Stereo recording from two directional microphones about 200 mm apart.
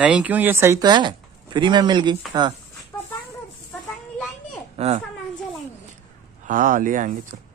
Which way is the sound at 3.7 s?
10° left (ahead or behind).